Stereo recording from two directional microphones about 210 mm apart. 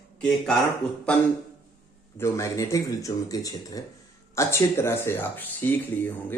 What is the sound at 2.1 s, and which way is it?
Speech, 15° left (ahead or behind).